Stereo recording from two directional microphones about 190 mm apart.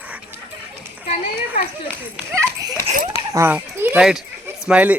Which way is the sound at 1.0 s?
35° left (ahead or behind).